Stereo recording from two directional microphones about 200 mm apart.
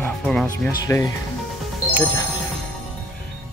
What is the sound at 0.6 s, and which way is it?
Speech, 15° left (ahead or behind).